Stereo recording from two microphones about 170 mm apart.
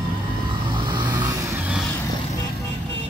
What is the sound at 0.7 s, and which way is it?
Vehicle, 25° right (ahead or behind).